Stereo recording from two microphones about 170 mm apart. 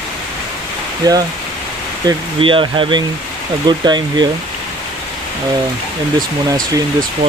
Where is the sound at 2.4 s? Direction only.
30° right (ahead or behind).